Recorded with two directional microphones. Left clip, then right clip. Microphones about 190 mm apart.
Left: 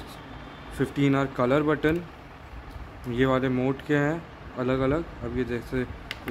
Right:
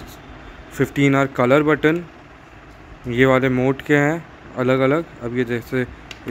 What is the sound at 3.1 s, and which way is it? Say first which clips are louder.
Speech: right 9 dB; 25° right (ahead or behind).